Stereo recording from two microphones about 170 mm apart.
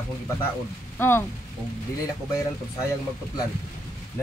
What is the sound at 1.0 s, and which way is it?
Speech, 15° left (ahead or behind).